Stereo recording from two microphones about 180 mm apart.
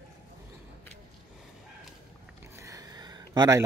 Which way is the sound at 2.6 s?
20° right (ahead or behind).